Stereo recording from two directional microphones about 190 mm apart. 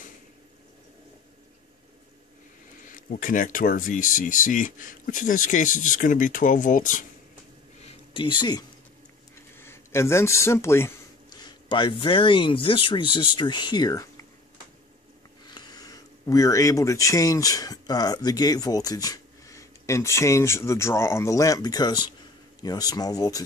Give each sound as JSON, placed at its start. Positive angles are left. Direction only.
{"t": 2.9, "sound": "speech", "side_deg": 45}
{"t": 7.8, "sound": "a sound", "side_deg": 30}
{"t": 9.6, "sound": "speech", "side_deg": 15}
{"t": 15.4, "sound": "speech", "side_deg": 20}